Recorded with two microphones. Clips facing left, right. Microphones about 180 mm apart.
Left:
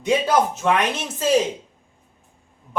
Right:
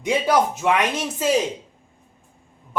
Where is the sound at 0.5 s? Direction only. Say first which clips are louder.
Even; 15° right (ahead or behind).